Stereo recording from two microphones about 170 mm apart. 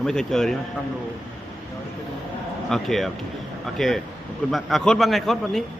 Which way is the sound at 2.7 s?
Centre (ahead or behind).